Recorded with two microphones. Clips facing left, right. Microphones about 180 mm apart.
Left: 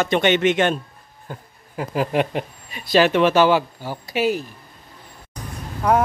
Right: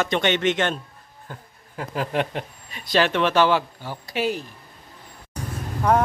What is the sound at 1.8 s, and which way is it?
Speech, 10° left (ahead or behind).